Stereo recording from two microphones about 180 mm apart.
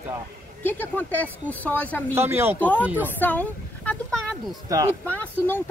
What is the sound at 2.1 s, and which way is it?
Speech, 10° right (ahead or behind).